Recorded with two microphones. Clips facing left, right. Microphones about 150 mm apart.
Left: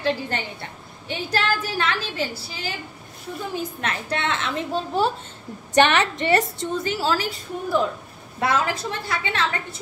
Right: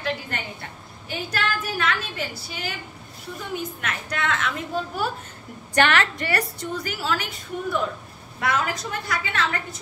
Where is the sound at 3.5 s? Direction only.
30° left (ahead or behind).